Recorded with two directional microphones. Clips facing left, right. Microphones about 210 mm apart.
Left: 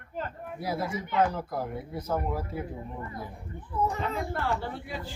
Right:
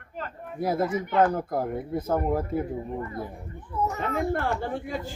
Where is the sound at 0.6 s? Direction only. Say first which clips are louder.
Right 7 dB; 50° right (ahead or behind).